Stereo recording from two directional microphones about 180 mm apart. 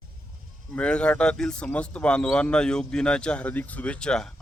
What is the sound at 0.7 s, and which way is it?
Speech, 5° left (ahead or behind).